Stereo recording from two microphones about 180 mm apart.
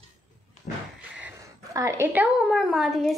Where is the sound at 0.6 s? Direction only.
40° left (ahead or behind).